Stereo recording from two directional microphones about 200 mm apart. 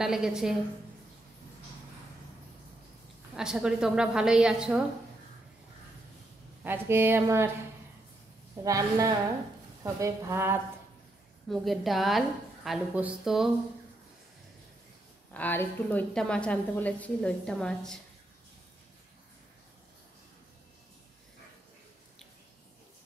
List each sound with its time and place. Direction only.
0.0 s a woman's voice: 5° right (ahead or behind)
3.3 s a woman's voice: 5° right (ahead or behind)
6.6 s speech: 10° right (ahead or behind)
8.6 s speech: 15° right (ahead or behind)
11.4 s a woman's voice: centre (ahead or behind)
15.3 s a woman's voice: 10° left (ahead or behind)